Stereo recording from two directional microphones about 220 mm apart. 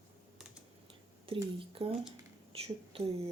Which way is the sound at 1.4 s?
25° right (ahead or behind).